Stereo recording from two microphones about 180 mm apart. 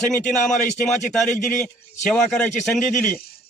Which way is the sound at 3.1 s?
55° left (ahead or behind).